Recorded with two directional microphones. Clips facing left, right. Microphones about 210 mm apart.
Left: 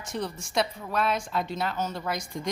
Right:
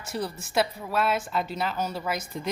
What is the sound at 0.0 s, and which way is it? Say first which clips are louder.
A woman's voice: right 1 dB; 5° right (ahead or behind).